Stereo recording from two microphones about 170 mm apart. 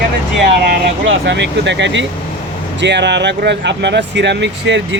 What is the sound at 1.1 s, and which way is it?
Speech, 90° right.